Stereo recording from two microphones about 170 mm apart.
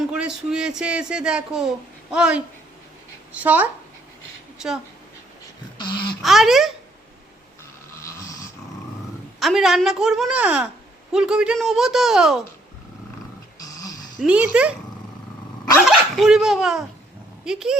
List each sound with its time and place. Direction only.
0.1 s a man's voice: 5° right (ahead or behind)
5.7 s a sound: 25° left (ahead or behind)
6.2 s a man's voice: centre (ahead or behind)
8.0 s snoring: 20° left (ahead or behind)
9.4 s a man's voice: centre (ahead or behind)
14.2 s speech: 5° right (ahead or behind)
15.9 s speech: centre (ahead or behind)